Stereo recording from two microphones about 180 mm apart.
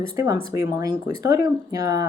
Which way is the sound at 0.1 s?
20° right (ahead or behind).